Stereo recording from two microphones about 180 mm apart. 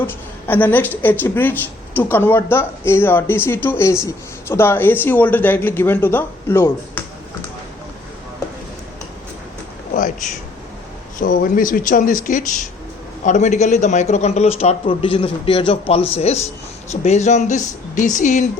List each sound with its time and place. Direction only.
0.1 s speech: 10° left (ahead or behind)
9.9 s a sound: 45° left (ahead or behind)
11.2 s a man's voice: 50° left (ahead or behind)